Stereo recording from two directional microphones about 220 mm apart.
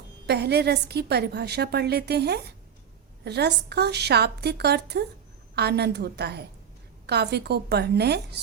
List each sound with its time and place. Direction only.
0.3 s a woman's voice: 50° right (ahead or behind)